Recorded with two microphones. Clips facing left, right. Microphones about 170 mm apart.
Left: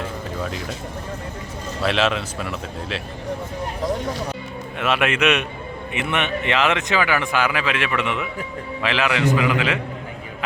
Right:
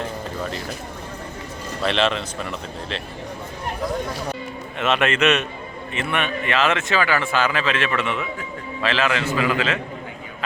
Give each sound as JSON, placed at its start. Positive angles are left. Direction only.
{"t": 1.8, "sound": "speech", "side_deg": 5}
{"t": 4.8, "sound": "a man's voice", "side_deg": 10}